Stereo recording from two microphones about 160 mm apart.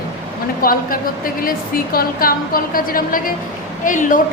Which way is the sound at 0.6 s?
65° left (ahead or behind).